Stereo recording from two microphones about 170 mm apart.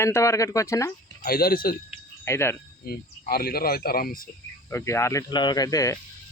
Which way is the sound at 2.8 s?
65° left (ahead or behind).